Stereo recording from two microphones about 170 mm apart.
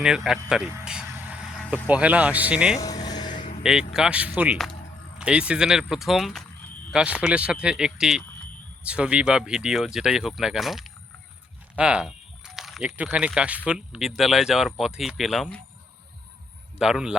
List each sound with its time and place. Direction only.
0.0 s speech: 5° right (ahead or behind)
0.9 s a sound: 5° right (ahead or behind)
1.9 s speech: 10° right (ahead or behind)
2.8 s vehicle: 25° left (ahead or behind)
3.3 s vehicle: 45° left (ahead or behind)
3.6 s speech: 5° right (ahead or behind)
16.7 s speech: 5° right (ahead or behind)